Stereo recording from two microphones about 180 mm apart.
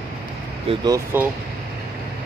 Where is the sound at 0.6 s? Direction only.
20° right (ahead or behind).